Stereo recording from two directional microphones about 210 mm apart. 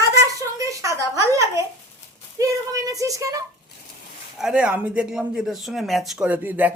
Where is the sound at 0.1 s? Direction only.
15° right (ahead or behind).